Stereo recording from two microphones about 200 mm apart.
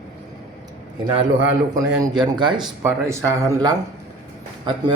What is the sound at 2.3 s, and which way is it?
Speech, 25° right (ahead or behind).